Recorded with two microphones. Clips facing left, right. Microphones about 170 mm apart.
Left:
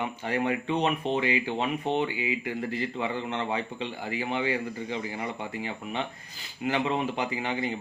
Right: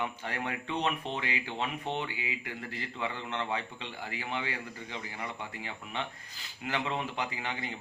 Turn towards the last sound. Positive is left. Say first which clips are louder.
# left 6 dB
turn(degrees=15)  # may be behind; listen again after turning